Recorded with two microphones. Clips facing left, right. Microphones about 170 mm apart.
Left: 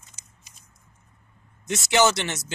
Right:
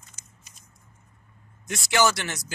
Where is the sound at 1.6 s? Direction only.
20° left (ahead or behind).